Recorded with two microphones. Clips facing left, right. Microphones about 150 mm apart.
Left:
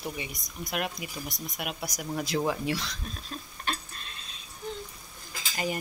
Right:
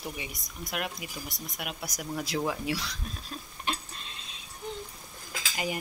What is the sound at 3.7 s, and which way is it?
Tick-tock, 20° right (ahead or behind).